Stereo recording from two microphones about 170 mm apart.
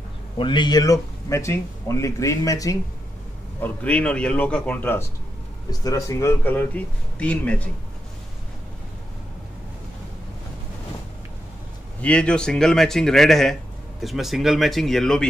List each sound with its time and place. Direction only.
0.4 s a man's voice: 25° left (ahead or behind)
3.6 s a man's voice: 5° left (ahead or behind)
5.7 s a man's voice: 20° left (ahead or behind)
12.0 s speech: 5° left (ahead or behind)